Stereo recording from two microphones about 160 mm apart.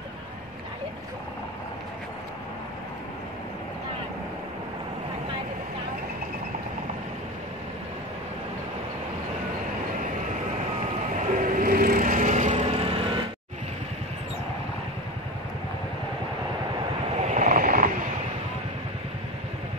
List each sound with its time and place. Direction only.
11.3 s vehicle: 55° right (ahead or behind); by 13.2 s 35° right (ahead or behind)
17.3 s vehicle: 50° right (ahead or behind)